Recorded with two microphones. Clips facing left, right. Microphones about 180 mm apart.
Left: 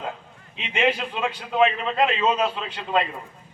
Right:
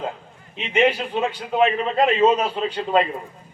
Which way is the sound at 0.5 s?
35° right (ahead or behind).